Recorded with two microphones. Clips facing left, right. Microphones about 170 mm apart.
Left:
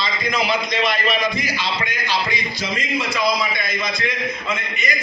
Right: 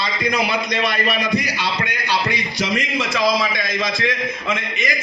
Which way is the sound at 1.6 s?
65° right (ahead or behind).